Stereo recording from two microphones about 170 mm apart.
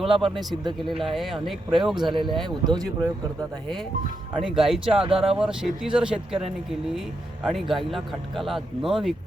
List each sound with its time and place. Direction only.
0.0 s speech: centre (ahead or behind)
4.4 s speech: centre (ahead or behind)
4.9 s speech: 35° right (ahead or behind)
5.1 s speech: 5° right (ahead or behind)
7.4 s speech: centre (ahead or behind)